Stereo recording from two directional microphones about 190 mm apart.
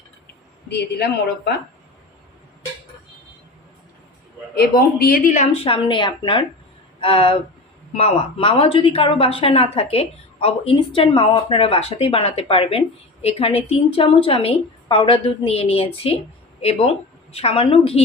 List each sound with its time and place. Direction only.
0.7 s a woman's voice: 60° left (ahead or behind)
4.5 s speech: 50° left (ahead or behind)
5.6 s speech: 25° left (ahead or behind)